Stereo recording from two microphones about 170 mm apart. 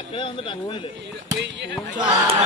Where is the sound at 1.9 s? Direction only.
30° right (ahead or behind).